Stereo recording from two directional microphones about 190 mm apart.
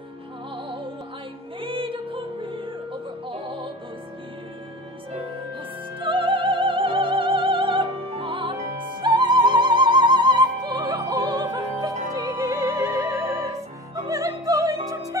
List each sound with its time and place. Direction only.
1.6 s music: 25° right (ahead or behind)
5.9 s music: 25° right (ahead or behind)